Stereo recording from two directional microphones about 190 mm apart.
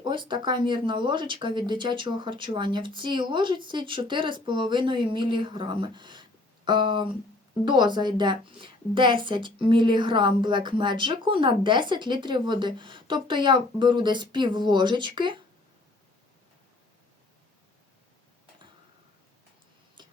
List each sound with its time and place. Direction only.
0.0 s a woman's voice: 25° right (ahead or behind)
20.0 s tick-tock: 25° right (ahead or behind)